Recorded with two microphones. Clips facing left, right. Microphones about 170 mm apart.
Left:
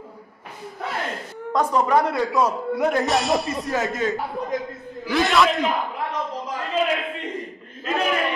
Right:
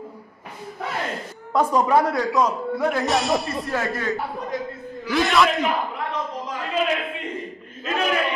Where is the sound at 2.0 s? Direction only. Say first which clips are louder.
Even; 5° left (ahead or behind).